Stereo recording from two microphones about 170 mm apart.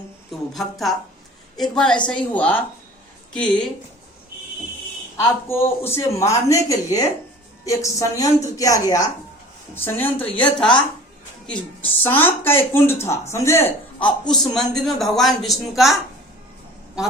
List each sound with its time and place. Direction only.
0.3 s speech: centre (ahead or behind)
5.1 s a woman's voice: 15° left (ahead or behind)
14.3 s speech: centre (ahead or behind)